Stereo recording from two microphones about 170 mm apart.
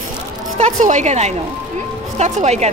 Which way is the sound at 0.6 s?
45° right (ahead or behind).